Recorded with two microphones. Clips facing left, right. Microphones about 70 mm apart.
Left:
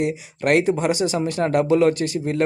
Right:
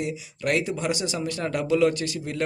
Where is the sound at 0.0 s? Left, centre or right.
Left.